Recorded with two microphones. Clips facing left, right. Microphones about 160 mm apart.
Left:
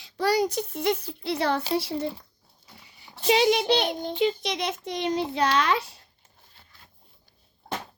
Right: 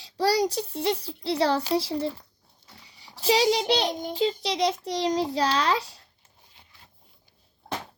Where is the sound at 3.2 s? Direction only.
30° right (ahead or behind).